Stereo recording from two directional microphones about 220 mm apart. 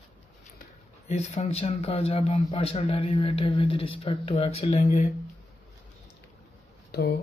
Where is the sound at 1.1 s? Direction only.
30° left (ahead or behind).